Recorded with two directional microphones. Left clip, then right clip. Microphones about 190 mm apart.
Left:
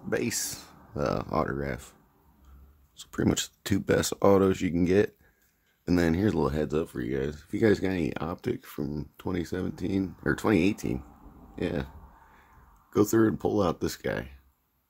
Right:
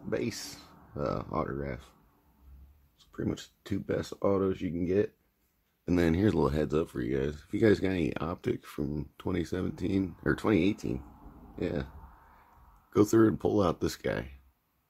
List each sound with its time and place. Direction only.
0.1 s speech: 10° left (ahead or behind)
3.0 s speech: 30° left (ahead or behind)
5.9 s speech: centre (ahead or behind)
12.9 s speech: centre (ahead or behind)